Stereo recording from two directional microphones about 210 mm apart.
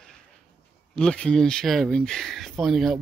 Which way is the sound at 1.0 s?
5° left (ahead or behind).